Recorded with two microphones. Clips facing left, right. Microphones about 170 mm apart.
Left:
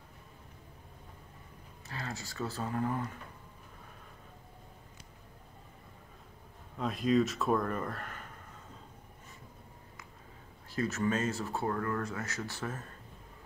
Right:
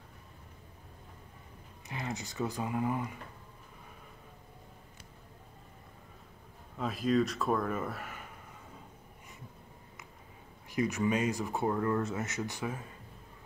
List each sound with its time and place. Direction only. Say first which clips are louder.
1.9 s speech: right 3 dB; 20° right (ahead or behind)
6.8 s speech: left 1 dB; centre (ahead or behind)
10.7 s speech: right 2 dB; 15° right (ahead or behind)